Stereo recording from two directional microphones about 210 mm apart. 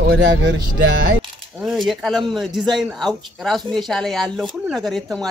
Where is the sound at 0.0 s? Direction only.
55° right (ahead or behind).